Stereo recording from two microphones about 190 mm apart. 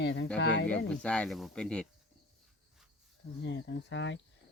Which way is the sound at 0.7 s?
5° left (ahead or behind).